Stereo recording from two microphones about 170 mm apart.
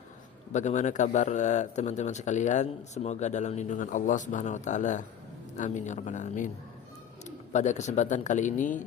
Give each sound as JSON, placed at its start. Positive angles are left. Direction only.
{"t": 0.5, "sound": "speech", "side_deg": 45}